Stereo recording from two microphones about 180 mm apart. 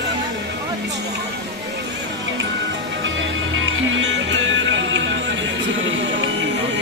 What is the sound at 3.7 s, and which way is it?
Music, 85° right.